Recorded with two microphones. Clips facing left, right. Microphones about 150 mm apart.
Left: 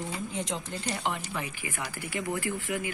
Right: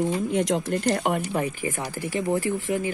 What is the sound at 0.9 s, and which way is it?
Speech, 50° right (ahead or behind).